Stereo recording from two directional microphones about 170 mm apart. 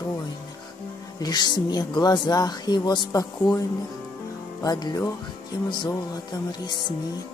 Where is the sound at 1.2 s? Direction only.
25° left (ahead or behind).